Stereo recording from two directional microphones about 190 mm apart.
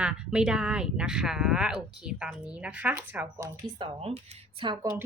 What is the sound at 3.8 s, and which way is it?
A woman's voice, 30° right (ahead or behind).